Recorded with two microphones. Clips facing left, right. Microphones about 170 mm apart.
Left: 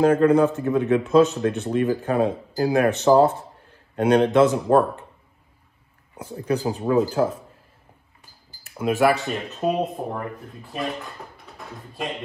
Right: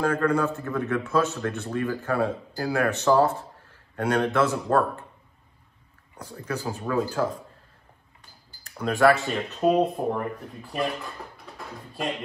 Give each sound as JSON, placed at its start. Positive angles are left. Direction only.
{"t": 0.0, "sound": "speech", "side_deg": 25}
{"t": 6.1, "sound": "speech", "side_deg": 15}
{"t": 8.8, "sound": "speech", "side_deg": 0}